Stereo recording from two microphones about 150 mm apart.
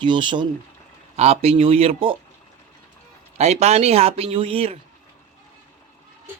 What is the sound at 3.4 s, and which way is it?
Speech, 45° right (ahead or behind).